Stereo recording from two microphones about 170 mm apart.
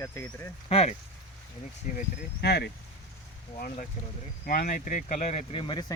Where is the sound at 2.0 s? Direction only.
70° left (ahead or behind).